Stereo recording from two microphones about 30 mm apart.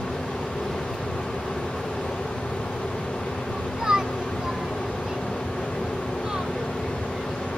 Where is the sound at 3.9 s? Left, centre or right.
Right.